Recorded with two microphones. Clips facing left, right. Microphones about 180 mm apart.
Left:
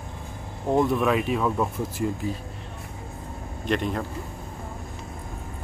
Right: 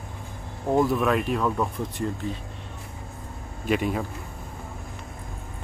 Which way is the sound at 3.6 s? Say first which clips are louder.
Right 1 dB; 5° right (ahead or behind).